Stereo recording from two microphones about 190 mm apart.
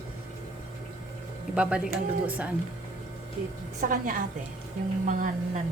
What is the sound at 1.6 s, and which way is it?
Speech, 5° right (ahead or behind).